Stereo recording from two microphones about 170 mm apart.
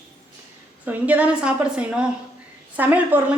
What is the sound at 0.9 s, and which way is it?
Speech, 10° right (ahead or behind).